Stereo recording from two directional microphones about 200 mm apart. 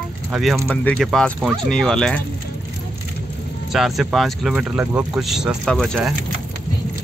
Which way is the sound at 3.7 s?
Centre (ahead or behind).